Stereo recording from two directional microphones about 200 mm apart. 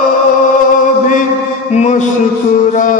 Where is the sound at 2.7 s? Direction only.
40° left (ahead or behind).